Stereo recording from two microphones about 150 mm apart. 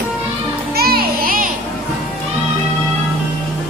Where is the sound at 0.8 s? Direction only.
80° right.